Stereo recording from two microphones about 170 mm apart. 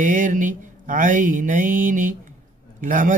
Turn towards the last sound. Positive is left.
turn(degrees=-50)  # may be behind; listen again after turning